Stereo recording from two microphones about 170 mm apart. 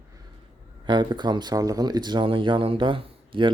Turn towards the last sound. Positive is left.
turn(degrees=-30)  # may be behind; listen again after turning